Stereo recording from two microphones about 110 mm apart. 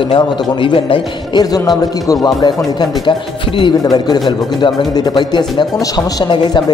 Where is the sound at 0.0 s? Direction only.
50° left (ahead or behind).